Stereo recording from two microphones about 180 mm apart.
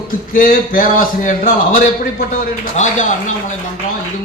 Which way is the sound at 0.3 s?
50° left (ahead or behind).